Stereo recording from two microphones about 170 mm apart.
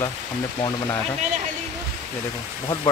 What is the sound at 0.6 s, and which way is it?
Speech, 20° left (ahead or behind).